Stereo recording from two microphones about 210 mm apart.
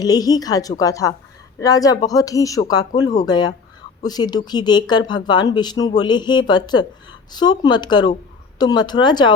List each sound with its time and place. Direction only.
0.0 s a woman's voice: 15° left (ahead or behind)